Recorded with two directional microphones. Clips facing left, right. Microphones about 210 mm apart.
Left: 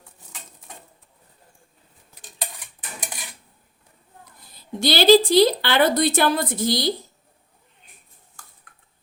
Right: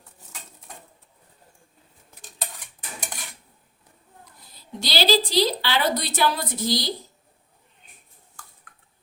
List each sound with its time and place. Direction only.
4.8 s a woman's voice: 55° left (ahead or behind)